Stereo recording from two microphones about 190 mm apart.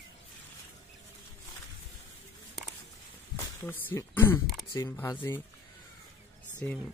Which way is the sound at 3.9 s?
10° left (ahead or behind).